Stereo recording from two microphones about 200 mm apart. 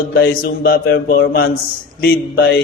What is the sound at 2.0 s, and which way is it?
Speech, 60° left (ahead or behind).